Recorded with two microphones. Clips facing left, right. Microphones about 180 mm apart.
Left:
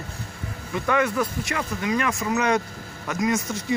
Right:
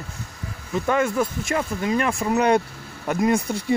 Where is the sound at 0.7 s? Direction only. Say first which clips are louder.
Right 2 dB; 40° right (ahead or behind).